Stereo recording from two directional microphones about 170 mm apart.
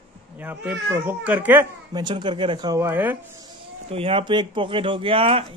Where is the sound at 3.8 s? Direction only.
35° right (ahead or behind).